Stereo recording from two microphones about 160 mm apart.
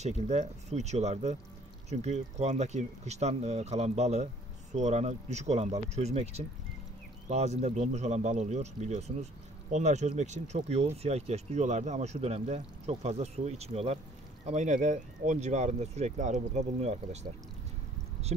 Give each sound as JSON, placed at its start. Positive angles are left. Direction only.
{"t": 0.0, "sound": "speech", "side_deg": -45}